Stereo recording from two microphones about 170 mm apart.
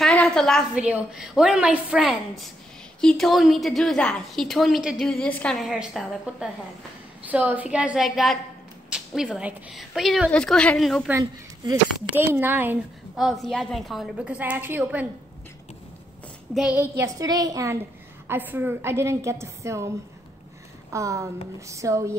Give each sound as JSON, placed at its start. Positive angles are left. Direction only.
{"t": 0.0, "sound": "a woman's voice", "side_deg": 5}
{"t": 11.1, "sound": "a woman's voice", "side_deg": -20}
{"t": 13.1, "sound": "a woman's voice", "side_deg": 0}
{"t": 16.5, "sound": "a woman's voice", "side_deg": -5}
{"t": 17.0, "sound": "a woman's voice", "side_deg": -20}
{"t": 20.9, "sound": "a woman's voice", "side_deg": -20}